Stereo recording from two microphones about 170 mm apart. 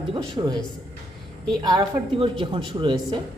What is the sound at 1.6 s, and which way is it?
Speech, 25° right (ahead or behind).